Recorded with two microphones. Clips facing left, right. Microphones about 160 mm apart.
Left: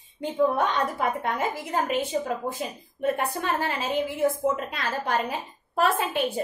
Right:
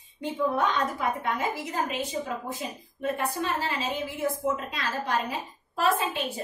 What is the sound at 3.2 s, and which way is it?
A woman's voice, 55° left (ahead or behind).